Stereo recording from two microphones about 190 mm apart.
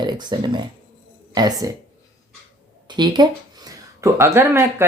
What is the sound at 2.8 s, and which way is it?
Speech, 25° right (ahead or behind).